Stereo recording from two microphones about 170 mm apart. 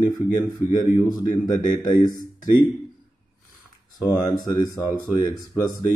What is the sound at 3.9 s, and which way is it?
Speech, 20° left (ahead or behind).